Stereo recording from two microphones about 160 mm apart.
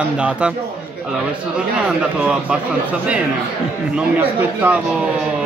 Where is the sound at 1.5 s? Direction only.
5° right (ahead or behind).